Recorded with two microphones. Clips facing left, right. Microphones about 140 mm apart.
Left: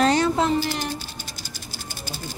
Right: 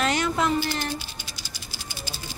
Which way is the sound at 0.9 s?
50° left (ahead or behind).